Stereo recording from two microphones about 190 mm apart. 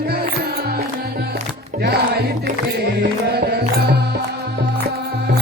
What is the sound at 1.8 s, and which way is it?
Music, 60° right (ahead or behind).